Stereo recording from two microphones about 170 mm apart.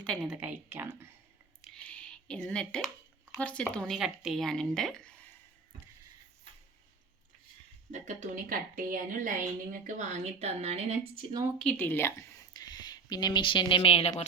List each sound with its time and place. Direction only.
0.0 s a woman's voice: centre (ahead or behind)
1.6 s a sound: 5° left (ahead or behind)
3.3 s speech: 5° left (ahead or behind)
7.9 s a woman's voice: 45° right (ahead or behind); by 11.4 s 30° right (ahead or behind)
11.6 s speech: 10° left (ahead or behind)
12.5 s speech: 25° left (ahead or behind)